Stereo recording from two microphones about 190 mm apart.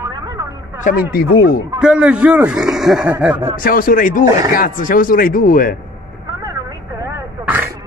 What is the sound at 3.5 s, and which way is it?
Speech, 50° left (ahead or behind).